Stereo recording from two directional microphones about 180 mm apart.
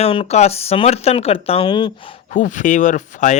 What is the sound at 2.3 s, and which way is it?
Speech, 45° left (ahead or behind).